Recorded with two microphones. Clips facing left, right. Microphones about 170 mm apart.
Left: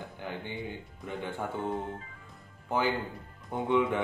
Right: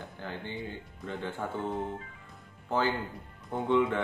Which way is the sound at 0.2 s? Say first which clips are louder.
Even; 15° left (ahead or behind).